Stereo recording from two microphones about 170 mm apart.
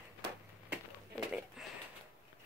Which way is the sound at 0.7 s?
5° right (ahead or behind).